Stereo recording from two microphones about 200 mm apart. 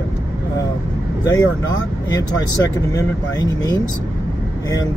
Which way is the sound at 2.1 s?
15° left (ahead or behind).